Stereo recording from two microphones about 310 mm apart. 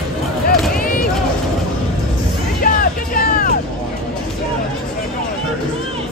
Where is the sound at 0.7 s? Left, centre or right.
Left.